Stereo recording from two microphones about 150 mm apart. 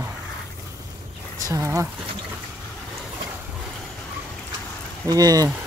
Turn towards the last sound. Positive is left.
turn(degrees=-25)  # may be behind; listen again after turning